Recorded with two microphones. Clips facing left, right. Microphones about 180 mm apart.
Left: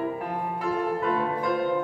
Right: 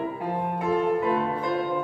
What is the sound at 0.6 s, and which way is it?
Music, 20° right (ahead or behind).